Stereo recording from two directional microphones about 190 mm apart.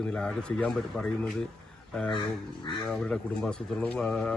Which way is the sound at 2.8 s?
5° left (ahead or behind).